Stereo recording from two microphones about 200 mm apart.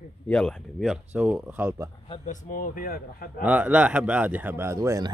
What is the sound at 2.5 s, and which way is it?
Speech, 45° left (ahead or behind).